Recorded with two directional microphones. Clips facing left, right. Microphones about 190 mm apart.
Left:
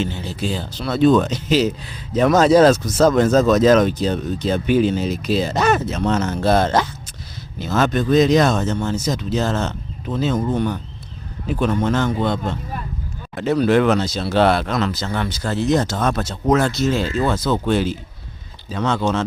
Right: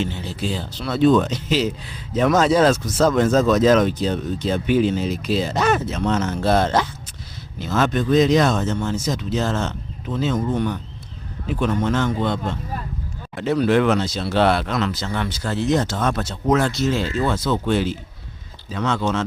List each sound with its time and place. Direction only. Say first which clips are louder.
0.5 s speech: left 2 dB; 45° left (ahead or behind)